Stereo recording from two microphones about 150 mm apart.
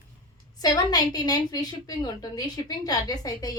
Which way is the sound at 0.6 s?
25° left (ahead or behind).